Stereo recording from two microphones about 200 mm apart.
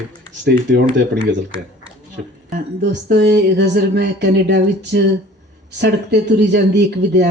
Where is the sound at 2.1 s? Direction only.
45° right (ahead or behind).